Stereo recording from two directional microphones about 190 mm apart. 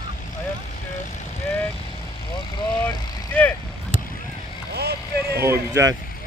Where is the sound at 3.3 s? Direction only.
10° left (ahead or behind).